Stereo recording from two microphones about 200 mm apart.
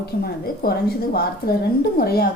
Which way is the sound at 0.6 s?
50° left (ahead or behind).